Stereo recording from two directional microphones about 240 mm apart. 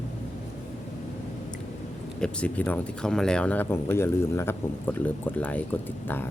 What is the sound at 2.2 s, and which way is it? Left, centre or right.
Speech, centre.